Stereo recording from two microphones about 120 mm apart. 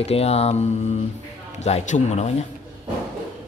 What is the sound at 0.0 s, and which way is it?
Speech, 60° left (ahead or behind).